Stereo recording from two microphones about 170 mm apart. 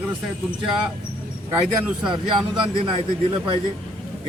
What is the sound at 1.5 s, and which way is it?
Speech, 5° right (ahead or behind).